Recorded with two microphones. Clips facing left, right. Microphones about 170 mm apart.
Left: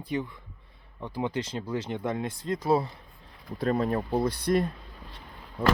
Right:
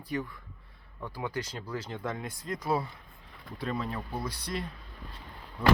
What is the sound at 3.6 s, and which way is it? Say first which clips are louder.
Speech: left 8 dB; 45° left (ahead or behind).